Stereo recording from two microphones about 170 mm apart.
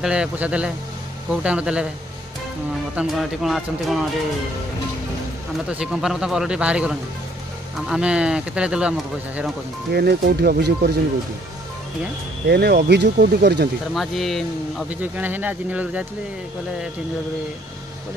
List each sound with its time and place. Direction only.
0.0 s speech: 5° right (ahead or behind)
3.0 s a man's voice: centre (ahead or behind)
5.7 s a man's voice: 5° right (ahead or behind)
9.9 s speech: 70° right (ahead or behind)
12.4 s speech: 70° right (ahead or behind)
13.9 s speech: centre (ahead or behind)